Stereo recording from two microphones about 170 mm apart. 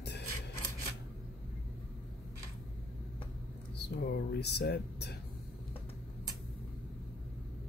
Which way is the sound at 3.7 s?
85° left.